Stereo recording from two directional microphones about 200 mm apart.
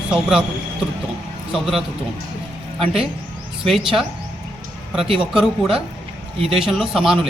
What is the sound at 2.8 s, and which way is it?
Speech, 30° right (ahead or behind).